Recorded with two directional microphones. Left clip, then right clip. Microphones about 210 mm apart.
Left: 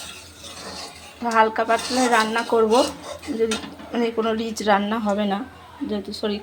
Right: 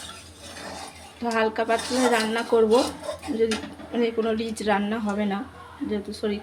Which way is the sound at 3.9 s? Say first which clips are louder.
Left 2 dB; centre (ahead or behind).